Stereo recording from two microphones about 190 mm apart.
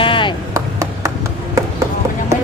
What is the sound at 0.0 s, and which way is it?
Chop, 25° left (ahead or behind).